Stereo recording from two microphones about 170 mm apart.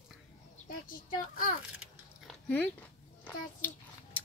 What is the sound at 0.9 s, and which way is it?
Speech, 55° left (ahead or behind).